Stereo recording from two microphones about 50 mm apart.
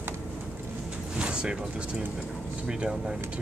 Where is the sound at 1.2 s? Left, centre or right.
Centre.